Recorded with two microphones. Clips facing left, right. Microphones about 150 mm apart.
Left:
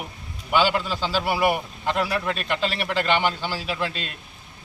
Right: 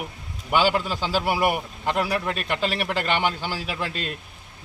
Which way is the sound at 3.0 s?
10° right (ahead or behind).